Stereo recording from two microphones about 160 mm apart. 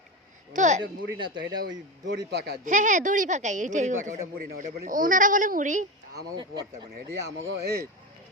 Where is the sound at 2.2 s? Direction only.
90° right.